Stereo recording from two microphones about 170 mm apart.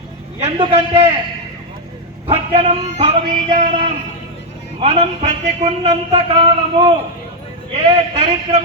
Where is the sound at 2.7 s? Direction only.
40° right (ahead or behind).